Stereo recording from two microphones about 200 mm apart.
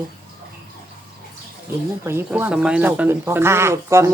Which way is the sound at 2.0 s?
10° right (ahead or behind).